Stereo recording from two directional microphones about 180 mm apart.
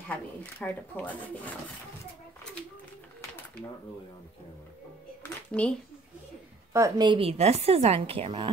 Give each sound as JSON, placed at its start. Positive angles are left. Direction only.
{"t": 0.1, "sound": "speech", "side_deg": 10}
{"t": 5.5, "sound": "speech", "side_deg": 5}
{"t": 6.7, "sound": "a woman's voice", "side_deg": -20}